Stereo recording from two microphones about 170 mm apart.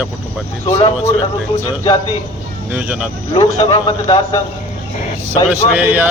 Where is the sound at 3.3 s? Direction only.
25° left (ahead or behind).